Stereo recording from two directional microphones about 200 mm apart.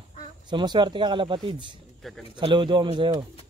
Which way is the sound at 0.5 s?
20° right (ahead or behind).